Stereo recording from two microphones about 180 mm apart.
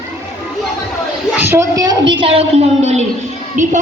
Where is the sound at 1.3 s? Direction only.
15° right (ahead or behind).